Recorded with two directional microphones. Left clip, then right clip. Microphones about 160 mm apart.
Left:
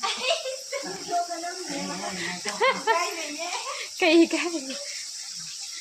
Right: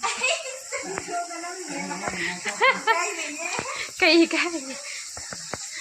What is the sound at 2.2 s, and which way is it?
A child's voice, 15° left (ahead or behind).